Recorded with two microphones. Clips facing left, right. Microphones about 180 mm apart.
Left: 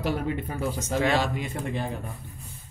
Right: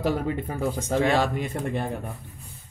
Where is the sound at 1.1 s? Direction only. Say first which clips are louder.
Right 2 dB; 50° right (ahead or behind).